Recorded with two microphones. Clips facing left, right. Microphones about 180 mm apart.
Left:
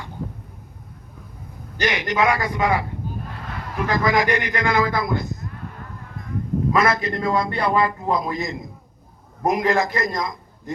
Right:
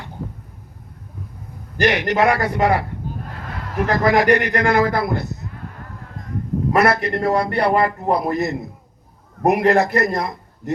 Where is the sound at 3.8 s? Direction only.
60° right (ahead or behind).